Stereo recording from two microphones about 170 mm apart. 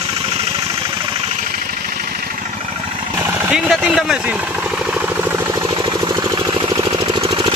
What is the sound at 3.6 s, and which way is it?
Speech, centre (ahead or behind).